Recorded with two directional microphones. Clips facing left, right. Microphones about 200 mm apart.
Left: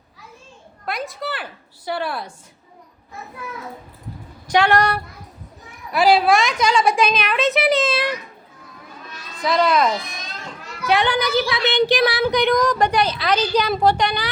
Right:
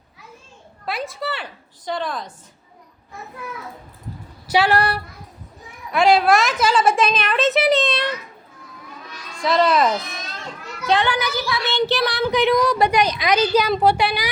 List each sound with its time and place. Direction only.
0.9 s a woman's voice: centre (ahead or behind)
4.4 s a woman's voice: 5° right (ahead or behind)
9.4 s a woman's voice: centre (ahead or behind)
10.8 s speech: 15° left (ahead or behind)
12.3 s a woman's voice: 5° right (ahead or behind)